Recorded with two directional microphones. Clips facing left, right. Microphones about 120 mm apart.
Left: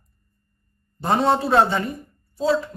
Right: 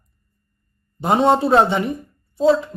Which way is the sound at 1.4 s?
20° right (ahead or behind).